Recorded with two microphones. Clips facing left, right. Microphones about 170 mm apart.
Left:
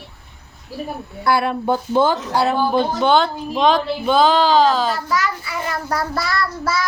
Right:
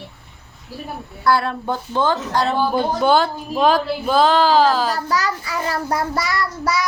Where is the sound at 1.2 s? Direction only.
15° left (ahead or behind).